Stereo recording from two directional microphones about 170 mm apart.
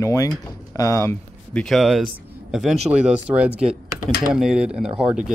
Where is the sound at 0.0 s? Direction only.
20° left (ahead or behind).